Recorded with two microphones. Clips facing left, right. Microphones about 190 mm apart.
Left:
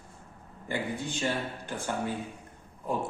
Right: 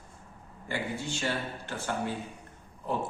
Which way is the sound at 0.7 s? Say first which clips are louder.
Left 1 dB; 15° left (ahead or behind).